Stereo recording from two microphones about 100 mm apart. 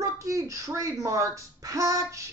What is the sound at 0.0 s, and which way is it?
Speech, 30° right (ahead or behind).